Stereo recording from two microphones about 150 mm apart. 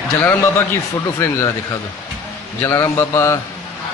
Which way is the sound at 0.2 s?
15° left (ahead or behind).